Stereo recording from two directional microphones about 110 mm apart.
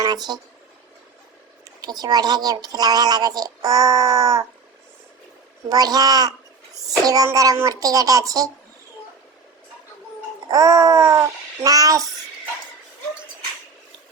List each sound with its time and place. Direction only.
0.0 s speech: 40° right (ahead or behind)
1.8 s a woman's voice: 35° right (ahead or behind)
5.6 s a woman's voice: 35° right (ahead or behind)
10.5 s a woman's voice: 30° right (ahead or behind)